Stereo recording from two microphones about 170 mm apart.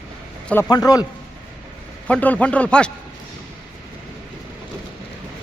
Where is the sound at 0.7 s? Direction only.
20° left (ahead or behind).